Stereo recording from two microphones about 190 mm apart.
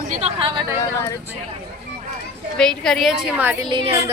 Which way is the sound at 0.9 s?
15° left (ahead or behind).